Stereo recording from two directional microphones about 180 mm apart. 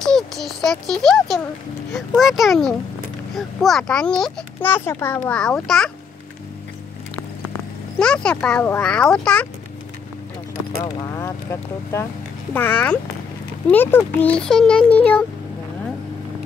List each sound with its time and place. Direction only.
0.0 s a sound: centre (ahead or behind)
2.0 s a child's voice: centre (ahead or behind)
8.0 s a child's voice: 5° left (ahead or behind)
11.0 s a child's voice: 15° left (ahead or behind)
12.5 s a child's voice: 10° left (ahead or behind)